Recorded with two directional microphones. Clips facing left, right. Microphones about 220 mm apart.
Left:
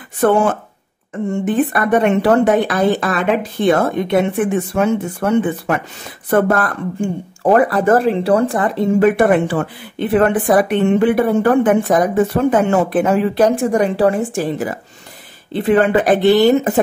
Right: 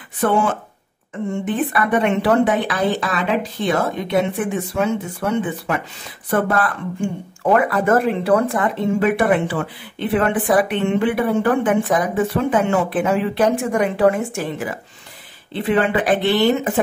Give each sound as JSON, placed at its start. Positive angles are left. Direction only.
{"t": 0.2, "sound": "speech", "side_deg": 45}